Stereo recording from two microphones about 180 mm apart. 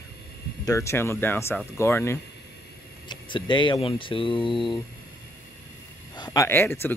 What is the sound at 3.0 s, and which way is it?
Speech, 25° left (ahead or behind).